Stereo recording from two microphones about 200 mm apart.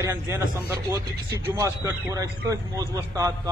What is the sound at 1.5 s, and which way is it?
A man's voice, 15° right (ahead or behind).